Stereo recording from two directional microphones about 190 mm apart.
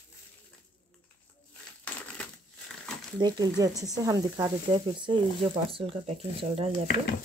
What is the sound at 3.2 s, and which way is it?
Speech, 20° right (ahead or behind).